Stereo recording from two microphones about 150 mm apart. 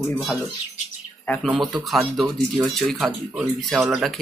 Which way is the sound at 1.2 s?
10° left (ahead or behind).